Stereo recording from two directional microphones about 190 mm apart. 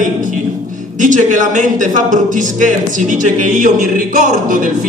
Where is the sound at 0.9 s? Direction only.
40° right (ahead or behind).